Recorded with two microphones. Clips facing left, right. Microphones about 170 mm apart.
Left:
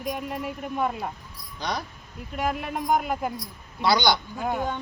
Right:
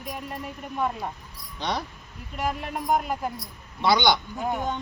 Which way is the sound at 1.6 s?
25° right (ahead or behind).